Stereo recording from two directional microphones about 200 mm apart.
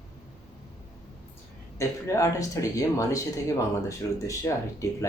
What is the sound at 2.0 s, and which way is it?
Speech, 15° left (ahead or behind).